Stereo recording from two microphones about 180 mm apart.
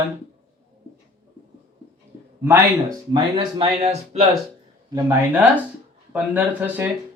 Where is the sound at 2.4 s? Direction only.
15° right (ahead or behind).